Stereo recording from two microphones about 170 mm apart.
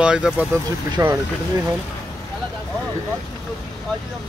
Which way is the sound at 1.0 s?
20° right (ahead or behind).